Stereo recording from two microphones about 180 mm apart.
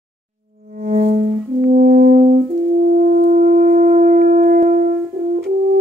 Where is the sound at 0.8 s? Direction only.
40° right (ahead or behind).